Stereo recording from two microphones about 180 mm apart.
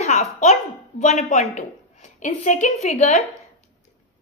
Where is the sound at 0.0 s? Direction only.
40° left (ahead or behind).